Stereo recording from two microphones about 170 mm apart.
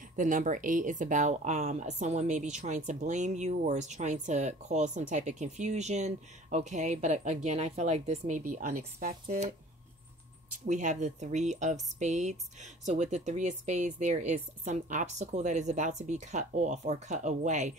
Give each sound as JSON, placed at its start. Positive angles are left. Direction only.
{"t": 0.1, "sound": "speech", "side_deg": -50}
{"t": 10.5, "sound": "speech", "side_deg": -45}